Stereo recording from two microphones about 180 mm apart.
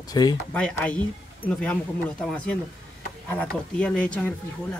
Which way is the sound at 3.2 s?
10° left (ahead or behind).